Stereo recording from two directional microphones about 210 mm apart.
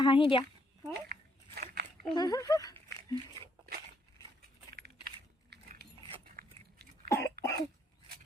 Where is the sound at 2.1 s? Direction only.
20° left (ahead or behind).